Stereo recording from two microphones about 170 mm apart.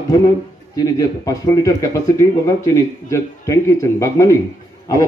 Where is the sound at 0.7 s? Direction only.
20° left (ahead or behind).